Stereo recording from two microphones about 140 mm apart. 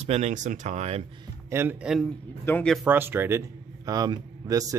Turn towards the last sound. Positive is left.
turn(degrees=-25)  # may be behind; listen again after turning